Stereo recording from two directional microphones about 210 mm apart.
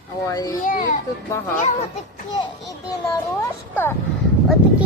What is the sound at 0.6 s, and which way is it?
Speech, 40° left (ahead or behind).